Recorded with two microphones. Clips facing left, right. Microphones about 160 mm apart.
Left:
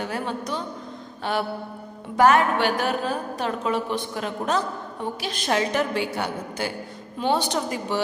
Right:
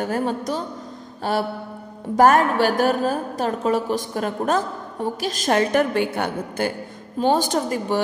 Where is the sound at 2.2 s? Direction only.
40° right (ahead or behind).